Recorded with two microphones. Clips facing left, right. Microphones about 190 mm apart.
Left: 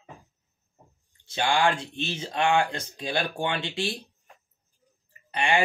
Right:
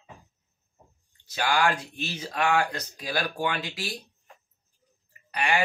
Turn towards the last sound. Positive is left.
turn(degrees=25)  # may be behind; listen again after turning